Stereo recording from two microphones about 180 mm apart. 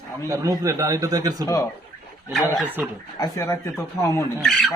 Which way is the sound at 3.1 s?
20° left (ahead or behind).